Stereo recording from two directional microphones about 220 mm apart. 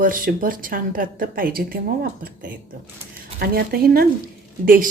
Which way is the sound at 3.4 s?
45° right (ahead or behind).